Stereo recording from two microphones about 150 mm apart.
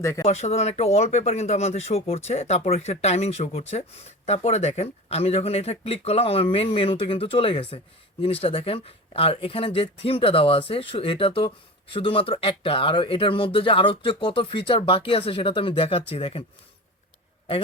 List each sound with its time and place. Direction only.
0.0 s speech: 20° left (ahead or behind)
0.3 s speech: 45° left (ahead or behind)